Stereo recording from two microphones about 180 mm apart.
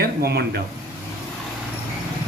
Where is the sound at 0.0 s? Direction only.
60° right (ahead or behind).